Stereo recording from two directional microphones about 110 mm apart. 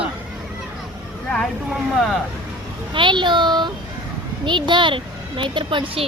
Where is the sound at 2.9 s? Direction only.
45° right (ahead or behind).